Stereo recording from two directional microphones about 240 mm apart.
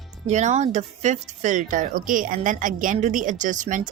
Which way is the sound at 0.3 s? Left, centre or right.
Right.